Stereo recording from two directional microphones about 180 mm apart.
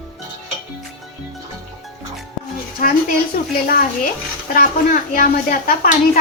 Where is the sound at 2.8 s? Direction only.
50° left (ahead or behind).